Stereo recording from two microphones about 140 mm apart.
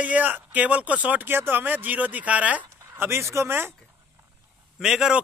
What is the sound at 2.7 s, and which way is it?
Speech, 20° right (ahead or behind).